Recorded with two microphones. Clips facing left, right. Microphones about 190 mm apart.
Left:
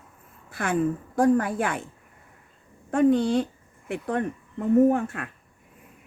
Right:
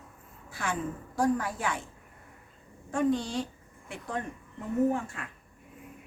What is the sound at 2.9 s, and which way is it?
A woman's voice, 60° left (ahead or behind).